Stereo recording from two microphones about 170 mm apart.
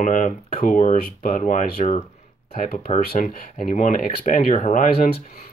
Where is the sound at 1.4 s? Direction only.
45° left (ahead or behind).